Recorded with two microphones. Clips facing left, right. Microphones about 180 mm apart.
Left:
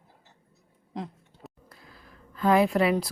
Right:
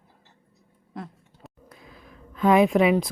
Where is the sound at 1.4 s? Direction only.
Centre (ahead or behind).